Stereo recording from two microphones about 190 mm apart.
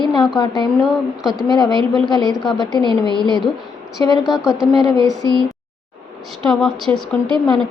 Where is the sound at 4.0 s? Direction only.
20° left (ahead or behind).